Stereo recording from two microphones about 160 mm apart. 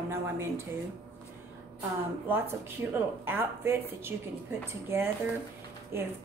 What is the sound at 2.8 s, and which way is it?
A woman's voice, 10° right (ahead or behind).